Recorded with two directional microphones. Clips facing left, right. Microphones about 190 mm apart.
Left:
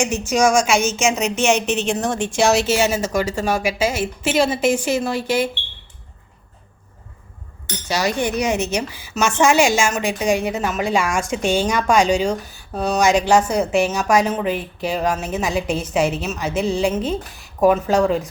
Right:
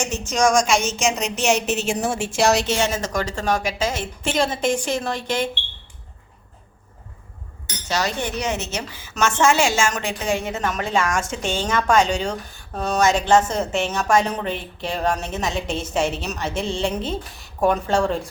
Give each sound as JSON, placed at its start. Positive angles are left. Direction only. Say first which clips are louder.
{"t": 0.0, "sound": "a woman's voice", "louder": "left 3 dB", "side_deg": 10}
{"t": 7.9, "sound": "a woman's voice", "louder": "left 4 dB", "side_deg": 10}